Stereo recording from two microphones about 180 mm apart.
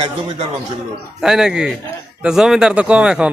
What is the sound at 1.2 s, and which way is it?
A man's voice, 5° right (ahead or behind).